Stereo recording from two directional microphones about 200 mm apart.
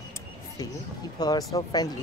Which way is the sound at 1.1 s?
20° left (ahead or behind).